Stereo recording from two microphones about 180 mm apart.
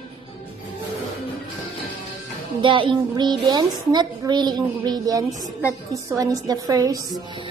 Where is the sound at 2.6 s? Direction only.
30° right (ahead or behind).